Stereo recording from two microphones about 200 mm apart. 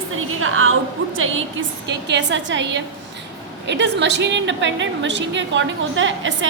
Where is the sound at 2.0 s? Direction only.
65° right (ahead or behind).